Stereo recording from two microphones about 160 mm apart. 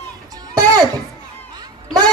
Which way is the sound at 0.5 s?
25° right (ahead or behind).